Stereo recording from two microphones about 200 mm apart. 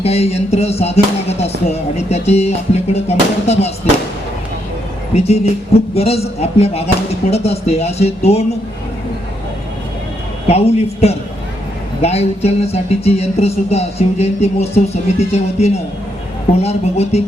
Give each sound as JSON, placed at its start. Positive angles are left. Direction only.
{"t": 0.0, "sound": "music", "side_deg": 30}
{"t": 5.1, "sound": "music", "side_deg": 30}
{"t": 10.5, "sound": "music", "side_deg": 30}